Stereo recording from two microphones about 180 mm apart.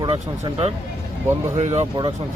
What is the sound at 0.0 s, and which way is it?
Speech, 30° right (ahead or behind).